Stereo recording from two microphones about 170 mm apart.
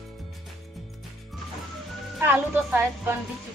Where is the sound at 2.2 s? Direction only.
10° right (ahead or behind).